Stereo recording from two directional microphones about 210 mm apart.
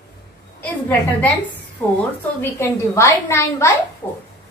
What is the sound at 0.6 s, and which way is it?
A woman's voice, 5° left (ahead or behind).